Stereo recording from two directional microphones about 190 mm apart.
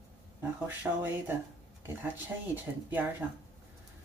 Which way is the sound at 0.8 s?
10° right (ahead or behind).